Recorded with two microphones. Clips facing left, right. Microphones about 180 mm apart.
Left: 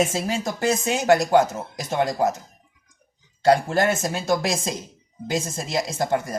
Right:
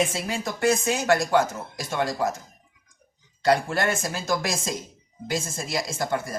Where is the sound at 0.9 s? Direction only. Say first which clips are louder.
Left 4 dB; 20° left (ahead or behind).